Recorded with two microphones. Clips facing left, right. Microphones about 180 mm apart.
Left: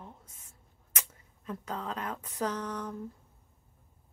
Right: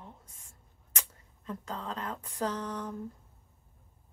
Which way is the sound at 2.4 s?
30° right (ahead or behind).